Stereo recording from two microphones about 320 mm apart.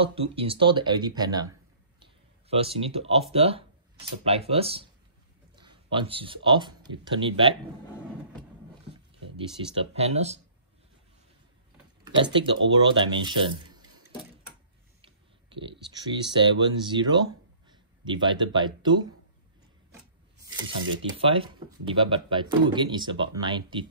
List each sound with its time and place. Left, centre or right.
0.0 s speech: centre
2.5 s speech: centre
9.8 s speech: centre
12.0 s speech: centre
16.6 s speech: centre
20.8 s speech: right
21.2 s speech: centre